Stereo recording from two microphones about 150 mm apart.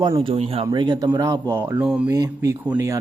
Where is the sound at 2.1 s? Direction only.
20° right (ahead or behind).